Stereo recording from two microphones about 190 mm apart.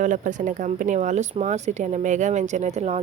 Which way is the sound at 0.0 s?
40° right (ahead or behind).